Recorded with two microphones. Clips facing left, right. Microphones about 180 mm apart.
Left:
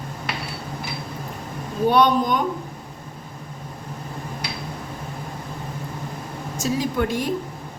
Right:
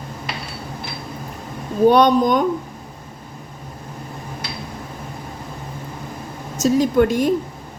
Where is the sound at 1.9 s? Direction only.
45° right (ahead or behind).